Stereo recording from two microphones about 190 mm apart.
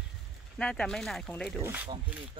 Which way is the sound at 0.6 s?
5° left (ahead or behind).